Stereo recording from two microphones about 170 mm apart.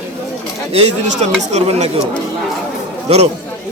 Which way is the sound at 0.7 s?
40° right (ahead or behind).